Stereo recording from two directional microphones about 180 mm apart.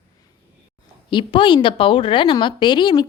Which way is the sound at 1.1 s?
25° left (ahead or behind).